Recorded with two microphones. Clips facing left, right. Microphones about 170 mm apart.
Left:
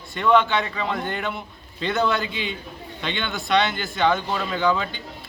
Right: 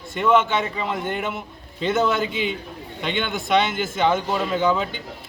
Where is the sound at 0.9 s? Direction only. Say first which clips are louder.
Right 1 dB; 10° right (ahead or behind).